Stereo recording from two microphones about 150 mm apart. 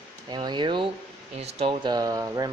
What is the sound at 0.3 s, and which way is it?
Speech, 30° right (ahead or behind).